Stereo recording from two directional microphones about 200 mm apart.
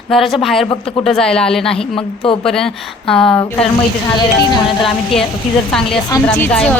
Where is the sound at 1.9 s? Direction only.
25° left (ahead or behind).